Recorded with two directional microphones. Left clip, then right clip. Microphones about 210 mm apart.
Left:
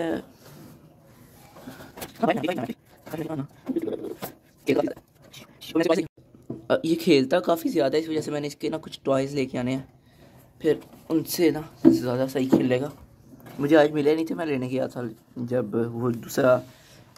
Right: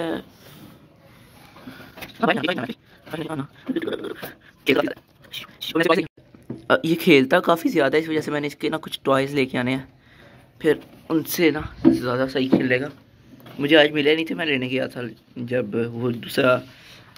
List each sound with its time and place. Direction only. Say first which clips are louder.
0.0 s speech: right 1 dB; 5° left (ahead or behind)
2.1 s speech: right 3 dB; centre (ahead or behind)
4.6 s a sound: right 4 dB; 5° left (ahead or behind)
6.7 s speech: right 4 dB; centre (ahead or behind)
13.9 s speech: right 3 dB; 5° left (ahead or behind)